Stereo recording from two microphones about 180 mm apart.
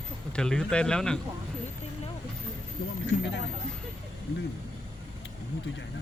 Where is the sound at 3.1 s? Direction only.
75° left (ahead or behind).